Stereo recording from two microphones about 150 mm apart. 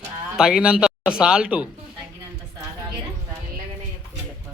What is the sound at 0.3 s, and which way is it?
Speech, 5° right (ahead or behind).